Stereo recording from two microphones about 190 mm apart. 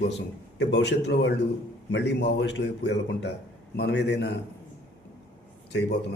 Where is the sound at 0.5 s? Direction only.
65° left (ahead or behind).